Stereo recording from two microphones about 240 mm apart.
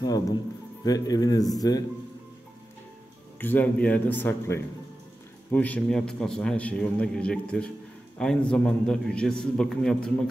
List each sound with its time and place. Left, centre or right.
0.8 s a man's voice: centre
3.3 s a man's voice: centre